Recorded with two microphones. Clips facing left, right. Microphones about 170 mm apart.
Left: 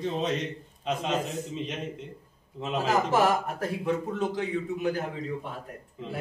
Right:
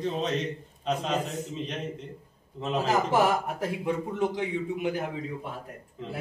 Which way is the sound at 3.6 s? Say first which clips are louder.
Left 1 dB; 15° right (ahead or behind).